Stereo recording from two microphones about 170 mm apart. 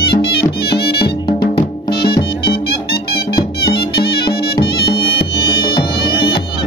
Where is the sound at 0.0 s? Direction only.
70° left (ahead or behind).